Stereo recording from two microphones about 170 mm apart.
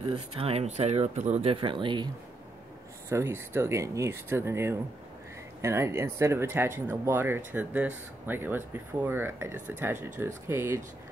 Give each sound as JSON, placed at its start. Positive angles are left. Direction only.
{"t": 0.1, "sound": "speech", "side_deg": -35}
{"t": 3.1, "sound": "speech", "side_deg": -15}